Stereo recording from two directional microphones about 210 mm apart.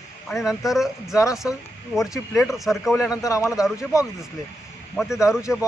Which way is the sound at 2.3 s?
Centre (ahead or behind).